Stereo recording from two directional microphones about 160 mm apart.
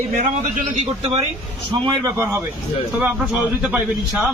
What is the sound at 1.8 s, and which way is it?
Speech, 20° right (ahead or behind).